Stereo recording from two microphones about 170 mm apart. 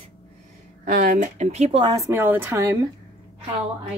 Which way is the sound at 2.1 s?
10° right (ahead or behind).